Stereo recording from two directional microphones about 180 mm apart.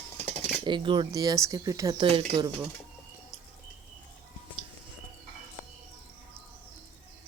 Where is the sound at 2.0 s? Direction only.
30° right (ahead or behind).